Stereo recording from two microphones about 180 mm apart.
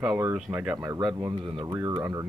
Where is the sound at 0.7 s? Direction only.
20° right (ahead or behind).